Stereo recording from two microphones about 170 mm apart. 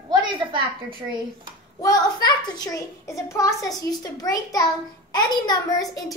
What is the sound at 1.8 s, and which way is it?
A child's voice, 20° left (ahead or behind).